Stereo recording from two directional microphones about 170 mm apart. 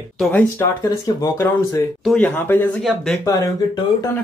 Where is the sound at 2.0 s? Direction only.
5° left (ahead or behind).